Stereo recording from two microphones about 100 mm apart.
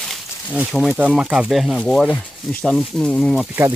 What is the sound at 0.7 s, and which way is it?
Speech, centre (ahead or behind).